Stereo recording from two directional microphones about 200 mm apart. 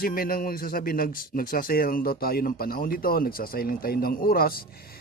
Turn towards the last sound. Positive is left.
turn(degrees=45)  # may be behind; listen again after turning